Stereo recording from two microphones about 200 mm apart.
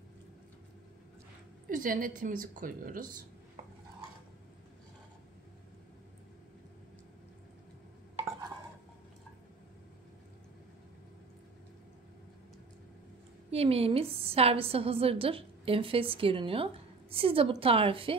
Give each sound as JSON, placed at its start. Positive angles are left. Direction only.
{"t": 1.7, "sound": "a woman's voice", "side_deg": -40}
{"t": 13.5, "sound": "a woman's voice", "side_deg": -30}